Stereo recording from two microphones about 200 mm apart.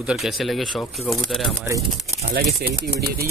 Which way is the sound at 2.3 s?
50° right (ahead or behind).